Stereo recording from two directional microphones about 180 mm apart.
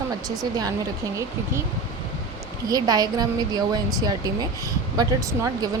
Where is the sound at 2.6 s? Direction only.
20° right (ahead or behind).